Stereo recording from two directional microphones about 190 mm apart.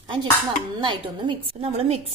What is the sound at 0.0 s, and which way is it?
Dishes, 20° right (ahead or behind).